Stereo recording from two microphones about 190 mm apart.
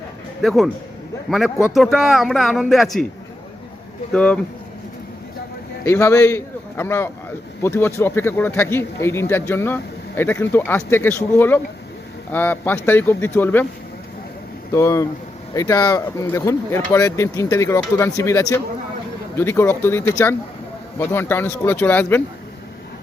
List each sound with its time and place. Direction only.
0.4 s speech: centre (ahead or behind)
4.1 s speech: 5° left (ahead or behind)
5.8 s a man's voice: 15° left (ahead or behind)
14.7 s speech: 15° left (ahead or behind)